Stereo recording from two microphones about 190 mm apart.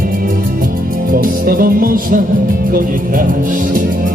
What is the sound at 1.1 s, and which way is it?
Music, 50° right (ahead or behind).